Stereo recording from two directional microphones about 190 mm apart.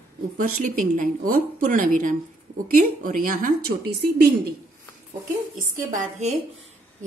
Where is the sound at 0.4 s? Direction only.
45° right (ahead or behind).